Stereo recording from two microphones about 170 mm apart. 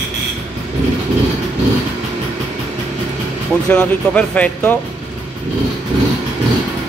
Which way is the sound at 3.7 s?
10° left (ahead or behind).